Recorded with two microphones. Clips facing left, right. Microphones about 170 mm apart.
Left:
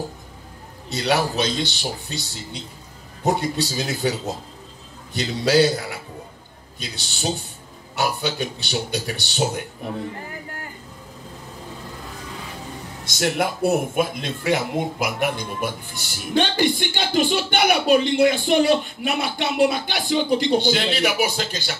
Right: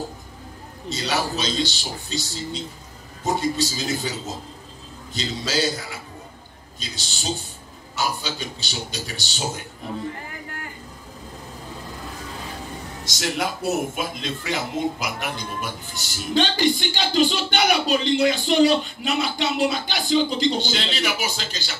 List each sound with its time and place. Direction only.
0.8 s speech: 60° left (ahead or behind)
5.1 s speech: 60° left (ahead or behind)
13.0 s speech: 55° left (ahead or behind)